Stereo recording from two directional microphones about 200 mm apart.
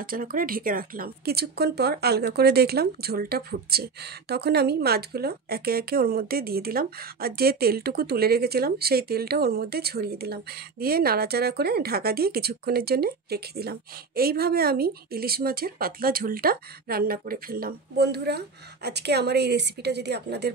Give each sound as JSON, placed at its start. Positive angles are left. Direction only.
{"t": 0.0, "sound": "speech", "side_deg": -45}